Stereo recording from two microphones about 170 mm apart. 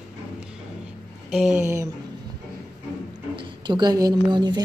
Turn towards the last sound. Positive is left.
turn(degrees=-25)  # may be behind; listen again after turning